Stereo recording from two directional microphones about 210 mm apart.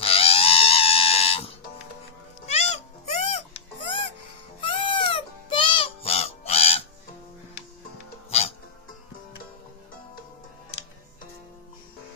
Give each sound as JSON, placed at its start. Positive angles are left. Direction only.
{"t": 0.0, "sound": "pig", "side_deg": 25}
{"t": 2.4, "sound": "music", "side_deg": 30}
{"t": 4.6, "sound": "crow", "side_deg": 25}
{"t": 8.3, "sound": "music", "side_deg": 30}